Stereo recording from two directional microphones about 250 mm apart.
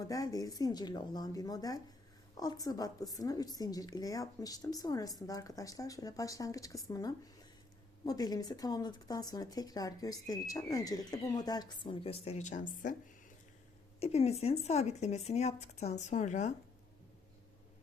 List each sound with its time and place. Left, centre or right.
0.0 s speech: centre; by 13.0 s left
14.0 s speech: left